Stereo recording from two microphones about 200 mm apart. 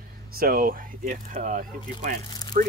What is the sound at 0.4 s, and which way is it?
Speech, 45° right (ahead or behind).